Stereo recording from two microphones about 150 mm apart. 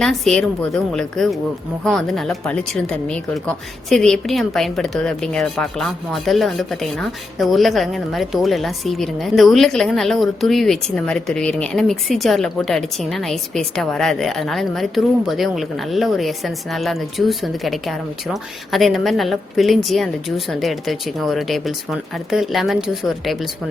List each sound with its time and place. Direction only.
0.0 s a woman's voice: 5° left (ahead or behind)